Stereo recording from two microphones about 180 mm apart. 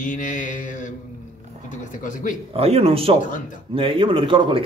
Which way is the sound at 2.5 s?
35° right (ahead or behind).